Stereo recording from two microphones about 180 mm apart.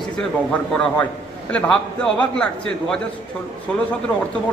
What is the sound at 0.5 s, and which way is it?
A man's voice, 5° left (ahead or behind).